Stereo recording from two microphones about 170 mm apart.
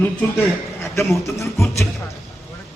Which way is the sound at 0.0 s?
15° left (ahead or behind).